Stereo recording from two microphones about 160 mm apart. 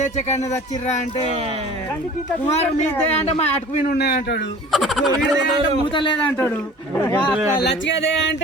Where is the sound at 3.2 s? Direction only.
40° left (ahead or behind).